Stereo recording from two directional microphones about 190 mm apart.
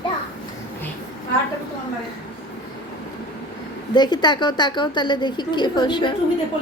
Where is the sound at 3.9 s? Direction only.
25° left (ahead or behind).